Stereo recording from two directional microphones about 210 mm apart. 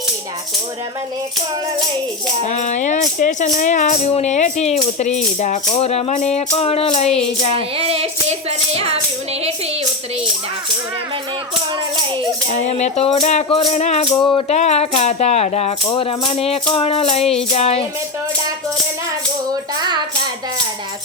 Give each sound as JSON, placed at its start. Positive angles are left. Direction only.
{"t": 2.5, "sound": "speech", "side_deg": 35}
{"t": 7.8, "sound": "a sound", "side_deg": -30}
{"t": 12.6, "sound": "speech", "side_deg": 30}
{"t": 19.5, "sound": "music", "side_deg": -20}